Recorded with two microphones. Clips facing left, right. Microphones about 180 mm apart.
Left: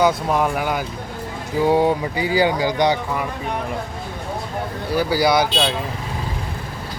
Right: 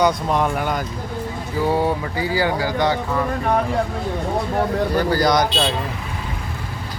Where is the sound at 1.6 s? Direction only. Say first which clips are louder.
Left 3 dB; 15° left (ahead or behind).